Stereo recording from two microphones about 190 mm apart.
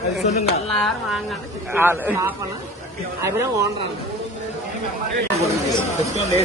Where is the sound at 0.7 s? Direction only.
Centre (ahead or behind).